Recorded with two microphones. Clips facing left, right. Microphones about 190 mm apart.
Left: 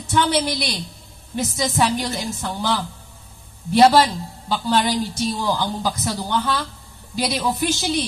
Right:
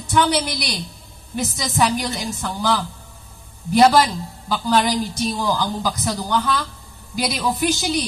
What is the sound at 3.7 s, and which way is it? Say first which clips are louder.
A woman's voice: even; 25° left (ahead or behind).